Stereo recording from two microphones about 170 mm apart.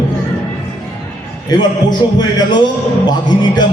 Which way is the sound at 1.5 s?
25° left (ahead or behind).